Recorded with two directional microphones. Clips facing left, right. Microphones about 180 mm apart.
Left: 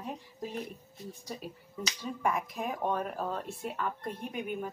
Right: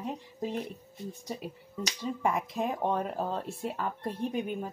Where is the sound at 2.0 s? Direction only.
25° right (ahead or behind).